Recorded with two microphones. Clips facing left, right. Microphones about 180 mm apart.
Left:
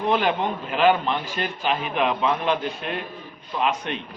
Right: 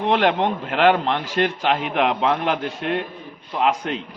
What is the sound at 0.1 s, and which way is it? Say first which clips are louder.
A man's voice: right 4 dB; 90° right.